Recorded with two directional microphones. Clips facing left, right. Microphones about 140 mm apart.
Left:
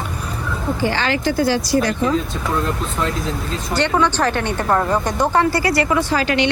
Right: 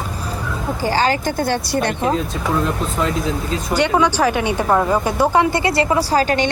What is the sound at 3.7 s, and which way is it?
A woman's voice, 10° right (ahead or behind).